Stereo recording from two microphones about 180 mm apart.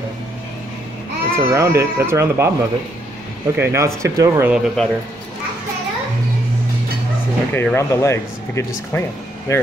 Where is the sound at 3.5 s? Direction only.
15° right (ahead or behind).